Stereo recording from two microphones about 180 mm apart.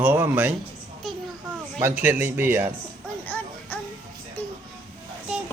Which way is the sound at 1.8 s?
10° right (ahead or behind).